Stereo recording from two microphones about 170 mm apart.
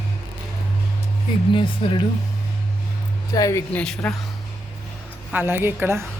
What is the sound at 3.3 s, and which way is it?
Speech, 20° left (ahead or behind).